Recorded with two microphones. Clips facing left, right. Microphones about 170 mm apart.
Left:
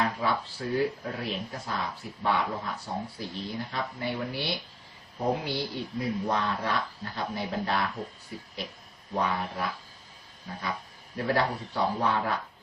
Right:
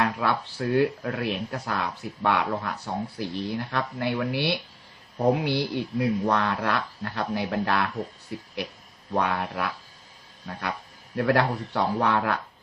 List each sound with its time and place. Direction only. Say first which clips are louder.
0.0 s speech: right 3 dB; 70° right (ahead or behind)
11.2 s speech: right 4 dB; 70° right (ahead or behind)